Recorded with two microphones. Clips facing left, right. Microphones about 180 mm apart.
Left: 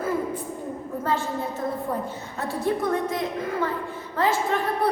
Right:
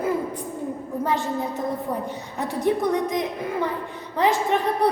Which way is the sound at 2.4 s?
15° right (ahead or behind).